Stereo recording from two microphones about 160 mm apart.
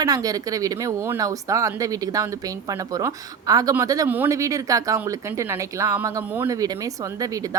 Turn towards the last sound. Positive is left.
turn(degrees=-20)  # may be behind; listen again after turning